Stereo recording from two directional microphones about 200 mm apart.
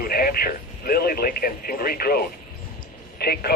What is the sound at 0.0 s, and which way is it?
Speech, 45° left (ahead or behind).